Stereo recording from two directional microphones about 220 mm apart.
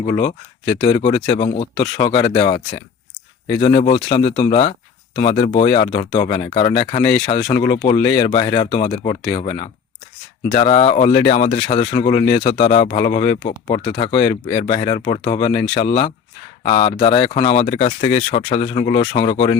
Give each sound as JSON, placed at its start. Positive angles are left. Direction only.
{"t": 0.8, "sound": "speech", "side_deg": 20}
{"t": 3.6, "sound": "speech", "side_deg": 30}
{"t": 13.2, "sound": "speech", "side_deg": 20}